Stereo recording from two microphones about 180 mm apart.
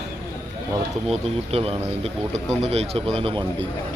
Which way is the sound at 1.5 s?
35° right (ahead or behind).